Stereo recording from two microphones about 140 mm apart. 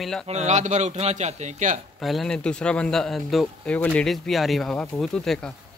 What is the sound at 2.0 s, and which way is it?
Speech, centre (ahead or behind).